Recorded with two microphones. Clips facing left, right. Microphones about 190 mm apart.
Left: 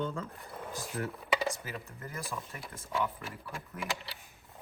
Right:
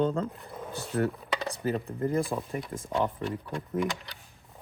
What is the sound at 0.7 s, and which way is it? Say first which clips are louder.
Speech: right 9 dB; 65° right (ahead or behind).